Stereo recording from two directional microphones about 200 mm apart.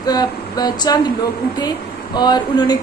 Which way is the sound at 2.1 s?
20° left (ahead or behind).